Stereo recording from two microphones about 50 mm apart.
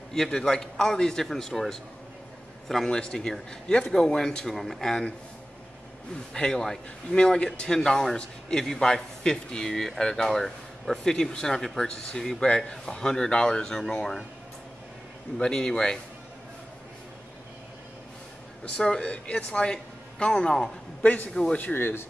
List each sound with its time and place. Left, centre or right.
0.1 s a man's voice: centre
6.3 s a man's voice: centre
15.3 s a man's voice: centre
18.6 s a man's voice: centre
21.0 s a man's voice: left
21.3 s a man's voice: centre
21.5 s speech: left